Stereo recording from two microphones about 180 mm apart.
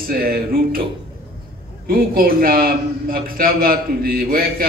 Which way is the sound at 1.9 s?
55° right (ahead or behind).